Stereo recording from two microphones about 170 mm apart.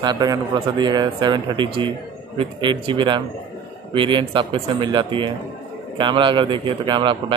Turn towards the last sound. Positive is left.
turn(degrees=-30)  # may be behind; listen again after turning